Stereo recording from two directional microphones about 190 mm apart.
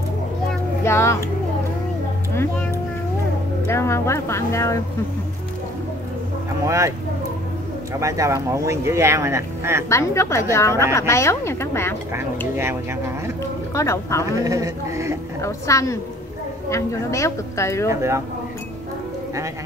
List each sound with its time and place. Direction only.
0.8 s speech: 15° left (ahead or behind)
3.6 s speech: 15° left (ahead or behind)
6.6 s speech: 15° right (ahead or behind)
8.0 s speech: 15° right (ahead or behind)
9.8 s speech: 15° left (ahead or behind)
13.7 s speech: 15° left (ahead or behind)
14.4 s speech: 15° right (ahead or behind)
15.4 s speech: 15° left (ahead or behind)
17.8 s speech: 15° right (ahead or behind)